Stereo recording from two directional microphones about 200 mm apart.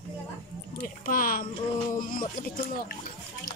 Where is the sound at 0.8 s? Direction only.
45° left (ahead or behind).